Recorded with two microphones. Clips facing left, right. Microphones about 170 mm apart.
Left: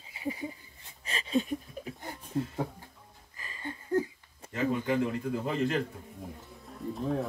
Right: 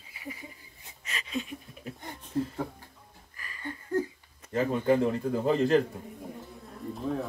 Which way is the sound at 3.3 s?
25° left (ahead or behind).